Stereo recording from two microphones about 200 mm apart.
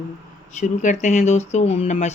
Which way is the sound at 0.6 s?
35° left (ahead or behind).